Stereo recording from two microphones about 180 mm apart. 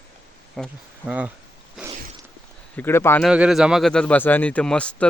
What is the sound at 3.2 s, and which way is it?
Speech, 5° right (ahead or behind).